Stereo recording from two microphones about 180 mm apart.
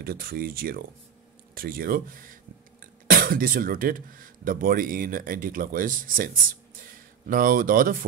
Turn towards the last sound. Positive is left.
turn(degrees=-50)  # may be behind; listen again after turning